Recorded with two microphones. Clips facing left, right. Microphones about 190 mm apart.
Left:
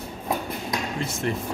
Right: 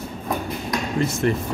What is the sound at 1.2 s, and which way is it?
Speech, 60° right (ahead or behind).